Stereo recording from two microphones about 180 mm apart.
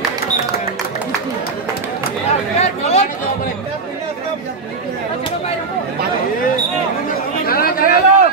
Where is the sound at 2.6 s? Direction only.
35° left (ahead or behind).